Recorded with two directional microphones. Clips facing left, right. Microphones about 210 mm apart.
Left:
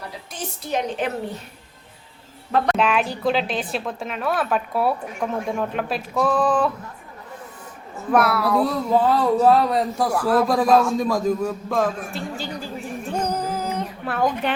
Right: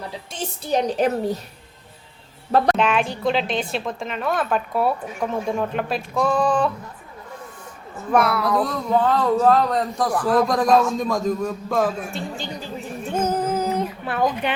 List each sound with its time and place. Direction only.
0.3 s a woman's voice: 25° right (ahead or behind)
1.0 s a woman's voice: 40° right (ahead or behind)
2.7 s a woman's voice: centre (ahead or behind)
8.1 s speech: 5° left (ahead or behind)
13.1 s music: 5° right (ahead or behind)
13.5 s a sound: centre (ahead or behind)